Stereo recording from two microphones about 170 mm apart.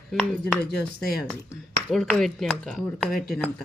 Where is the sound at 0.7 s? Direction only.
65° left (ahead or behind).